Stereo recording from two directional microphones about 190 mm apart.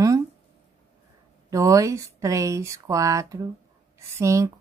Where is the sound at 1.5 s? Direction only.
15° right (ahead or behind).